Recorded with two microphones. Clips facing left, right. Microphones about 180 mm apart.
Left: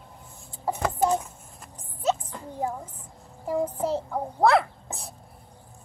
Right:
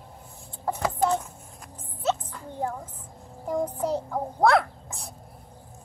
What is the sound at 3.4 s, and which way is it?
Child singing, 5° left (ahead or behind).